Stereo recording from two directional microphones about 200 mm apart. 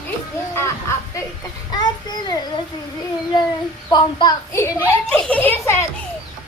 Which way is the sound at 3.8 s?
20° left (ahead or behind).